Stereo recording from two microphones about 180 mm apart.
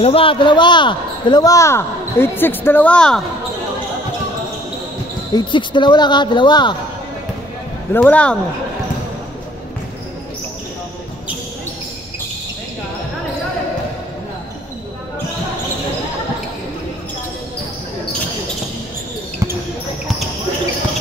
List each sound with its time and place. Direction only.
0.0 s speech: 30° left (ahead or behind); by 3.2 s 5° left (ahead or behind)
5.3 s speech: 25° left (ahead or behind)
7.9 s speech: 10° left (ahead or behind)